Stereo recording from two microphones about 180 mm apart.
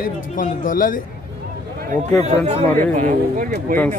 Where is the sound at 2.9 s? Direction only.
50° right (ahead or behind).